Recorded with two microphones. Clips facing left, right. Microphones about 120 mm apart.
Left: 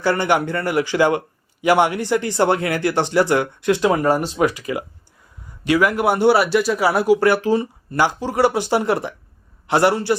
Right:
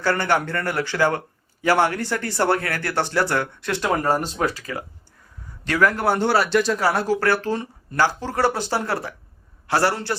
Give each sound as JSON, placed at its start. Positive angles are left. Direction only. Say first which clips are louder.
{"t": 0.0, "sound": "a man's voice", "louder": "left 3 dB", "side_deg": 15}